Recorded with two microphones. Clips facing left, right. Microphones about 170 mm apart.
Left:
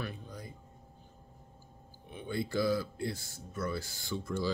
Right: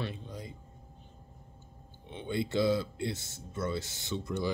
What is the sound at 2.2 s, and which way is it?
Speech, 20° right (ahead or behind).